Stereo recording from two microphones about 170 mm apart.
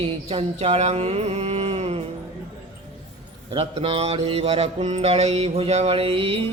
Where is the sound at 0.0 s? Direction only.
35° right (ahead or behind).